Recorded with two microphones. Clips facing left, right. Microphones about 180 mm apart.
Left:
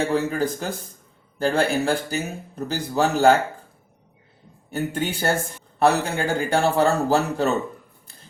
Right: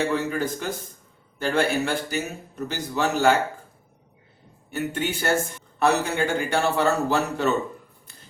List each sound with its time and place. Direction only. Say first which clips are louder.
0.1 s a man's voice: left 3 dB; 35° left (ahead or behind)
4.7 s a man's voice: left 1 dB; 35° left (ahead or behind)